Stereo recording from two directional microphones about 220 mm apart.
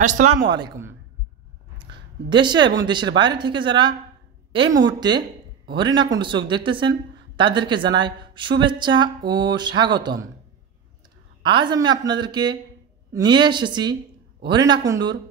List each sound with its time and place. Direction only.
0.2 s speech: 65° right (ahead or behind)
0.5 s speech: 20° right (ahead or behind)
1.8 s a sound: 20° right (ahead or behind)
2.8 s speech: 20° right (ahead or behind)
4.6 s speech: 55° right (ahead or behind)
5.7 s speech: 20° right (ahead or behind)
11.4 s speech: 20° right (ahead or behind)